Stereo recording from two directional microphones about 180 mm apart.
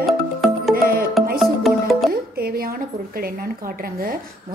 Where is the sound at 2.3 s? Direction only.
55° right (ahead or behind).